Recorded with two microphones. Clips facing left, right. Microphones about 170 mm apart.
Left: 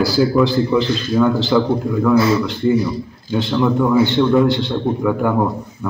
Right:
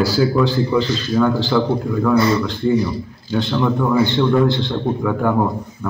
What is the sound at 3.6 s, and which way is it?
Speech, 5° left (ahead or behind).